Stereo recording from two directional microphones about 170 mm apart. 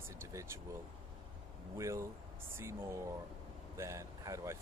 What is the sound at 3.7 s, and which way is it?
Speech, 15° right (ahead or behind).